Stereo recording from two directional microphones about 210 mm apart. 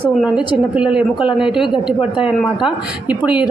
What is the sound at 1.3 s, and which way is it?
Speech, 25° left (ahead or behind).